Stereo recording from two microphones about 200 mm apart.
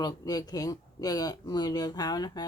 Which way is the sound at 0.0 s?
20° left (ahead or behind).